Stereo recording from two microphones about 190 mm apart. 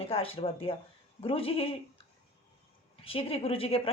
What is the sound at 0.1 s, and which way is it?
A woman's voice, 30° left (ahead or behind).